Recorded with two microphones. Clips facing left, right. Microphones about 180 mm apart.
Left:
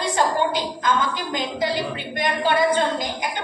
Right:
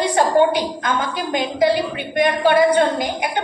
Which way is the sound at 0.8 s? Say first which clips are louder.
Right 1 dB; 60° right (ahead or behind).